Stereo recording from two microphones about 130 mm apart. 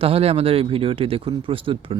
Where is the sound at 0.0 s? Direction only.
50° right (ahead or behind).